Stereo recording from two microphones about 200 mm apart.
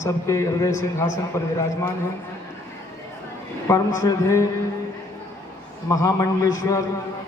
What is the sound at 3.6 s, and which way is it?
Speech, 15° left (ahead or behind).